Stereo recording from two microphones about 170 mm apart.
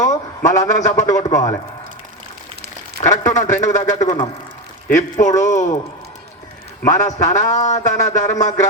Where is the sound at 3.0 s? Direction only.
45° left (ahead or behind).